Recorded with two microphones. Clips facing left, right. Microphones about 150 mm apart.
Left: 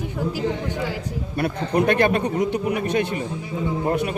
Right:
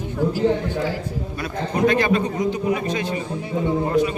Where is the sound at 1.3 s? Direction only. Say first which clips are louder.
Left 5 dB; 60° left (ahead or behind).